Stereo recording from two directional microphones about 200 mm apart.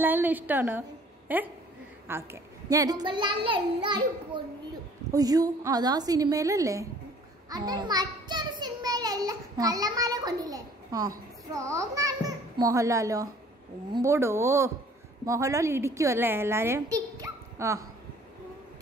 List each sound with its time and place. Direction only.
0.0 s a woman's voice: 10° right (ahead or behind)